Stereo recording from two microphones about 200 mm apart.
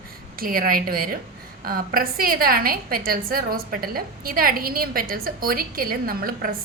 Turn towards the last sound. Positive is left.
turn(degrees=-45)  # may be behind; listen again after turning